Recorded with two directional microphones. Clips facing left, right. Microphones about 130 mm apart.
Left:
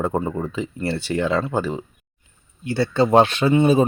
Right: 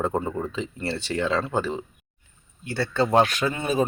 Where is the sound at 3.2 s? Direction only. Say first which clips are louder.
Left 8 dB; 25° left (ahead or behind).